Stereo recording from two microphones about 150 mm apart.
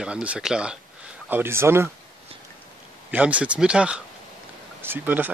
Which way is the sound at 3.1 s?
10° right (ahead or behind).